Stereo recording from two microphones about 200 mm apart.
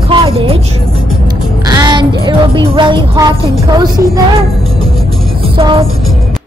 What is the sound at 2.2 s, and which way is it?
A woman's voice, 25° right (ahead or behind).